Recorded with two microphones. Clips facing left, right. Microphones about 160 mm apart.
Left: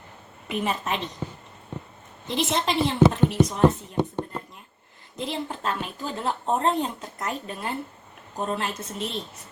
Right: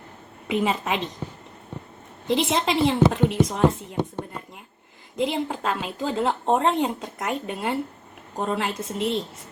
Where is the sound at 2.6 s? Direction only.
85° right.